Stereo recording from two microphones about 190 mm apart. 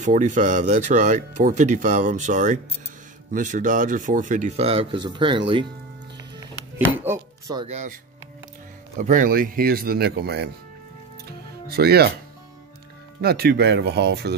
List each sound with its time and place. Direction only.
0.0 s speech: 40° right (ahead or behind); by 5.4 s 25° right (ahead or behind)
7.0 s chopping: 15° right (ahead or behind)
7.6 s speech: 40° right (ahead or behind); by 10.5 s 60° right (ahead or behind)
11.6 s speech: 55° right (ahead or behind)
13.2 s speech: 55° right (ahead or behind)